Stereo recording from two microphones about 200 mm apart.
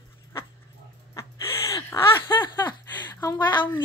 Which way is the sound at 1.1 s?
15° left (ahead or behind).